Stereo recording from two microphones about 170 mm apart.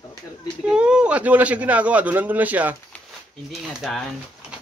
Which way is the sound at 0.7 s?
5° right (ahead or behind).